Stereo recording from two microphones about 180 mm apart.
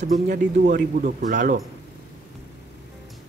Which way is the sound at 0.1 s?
50° right (ahead or behind).